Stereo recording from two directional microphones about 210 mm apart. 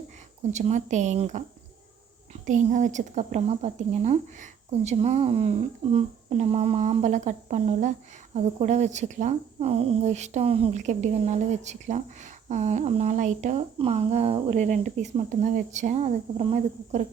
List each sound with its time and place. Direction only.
0.5 s speech: 35° right (ahead or behind)
2.5 s speech: 35° right (ahead or behind)